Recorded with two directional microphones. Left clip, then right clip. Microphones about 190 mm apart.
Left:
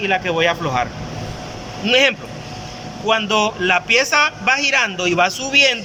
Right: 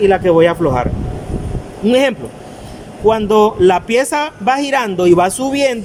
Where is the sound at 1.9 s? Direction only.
40° right (ahead or behind).